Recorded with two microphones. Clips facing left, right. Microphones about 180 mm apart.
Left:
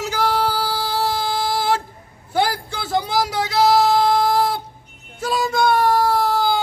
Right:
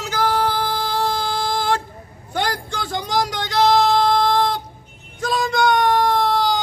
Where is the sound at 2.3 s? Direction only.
5° left (ahead or behind).